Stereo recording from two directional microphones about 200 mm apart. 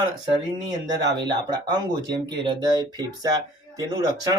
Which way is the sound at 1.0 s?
20° right (ahead or behind).